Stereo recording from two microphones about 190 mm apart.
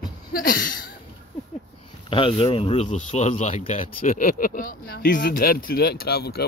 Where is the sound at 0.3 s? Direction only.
50° left (ahead or behind).